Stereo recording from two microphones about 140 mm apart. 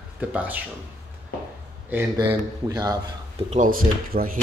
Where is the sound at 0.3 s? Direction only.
10° right (ahead or behind).